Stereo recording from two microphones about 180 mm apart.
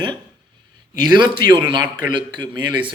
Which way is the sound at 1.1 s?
25° right (ahead or behind).